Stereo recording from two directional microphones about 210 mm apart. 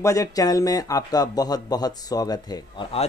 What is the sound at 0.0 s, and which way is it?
Speech, 15° left (ahead or behind).